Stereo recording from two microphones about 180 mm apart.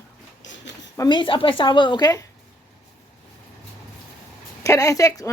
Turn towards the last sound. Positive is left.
turn(degrees=20)  # may be behind; listen again after turning